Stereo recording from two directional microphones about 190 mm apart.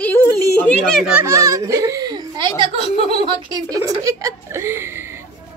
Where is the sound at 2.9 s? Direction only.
35° left (ahead or behind).